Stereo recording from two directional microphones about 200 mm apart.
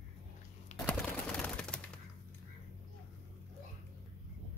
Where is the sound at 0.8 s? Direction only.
5° left (ahead or behind).